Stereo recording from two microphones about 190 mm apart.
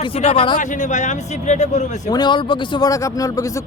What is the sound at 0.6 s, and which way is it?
Speech, 40° left (ahead or behind).